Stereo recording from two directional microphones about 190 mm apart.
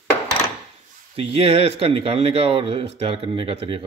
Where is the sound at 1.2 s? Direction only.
30° right (ahead or behind).